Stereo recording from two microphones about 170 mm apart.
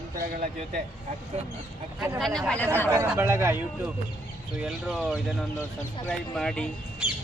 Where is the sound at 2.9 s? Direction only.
15° right (ahead or behind).